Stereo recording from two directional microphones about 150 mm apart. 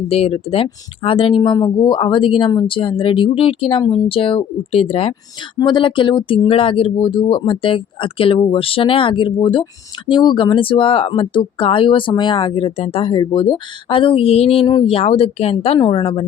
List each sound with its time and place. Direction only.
0.1 s speech: 40° left (ahead or behind)